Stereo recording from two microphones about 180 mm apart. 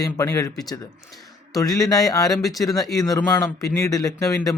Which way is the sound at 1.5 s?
20° left (ahead or behind).